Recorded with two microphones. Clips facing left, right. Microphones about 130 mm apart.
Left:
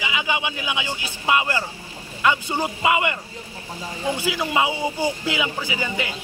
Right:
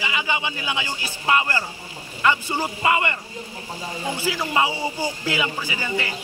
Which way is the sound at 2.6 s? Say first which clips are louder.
Left 1 dB; 10° left (ahead or behind).